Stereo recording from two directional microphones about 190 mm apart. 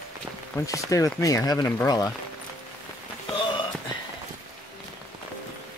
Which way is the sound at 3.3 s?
25° left (ahead or behind).